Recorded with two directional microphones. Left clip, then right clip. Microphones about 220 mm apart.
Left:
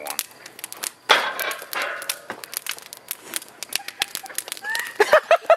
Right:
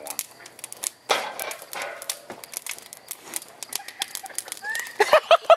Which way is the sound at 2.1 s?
10° left (ahead or behind).